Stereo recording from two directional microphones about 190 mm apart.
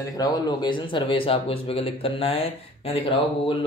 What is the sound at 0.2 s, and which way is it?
Speech, 25° left (ahead or behind).